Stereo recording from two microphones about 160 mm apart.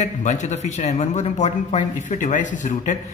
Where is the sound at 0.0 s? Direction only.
45° left (ahead or behind).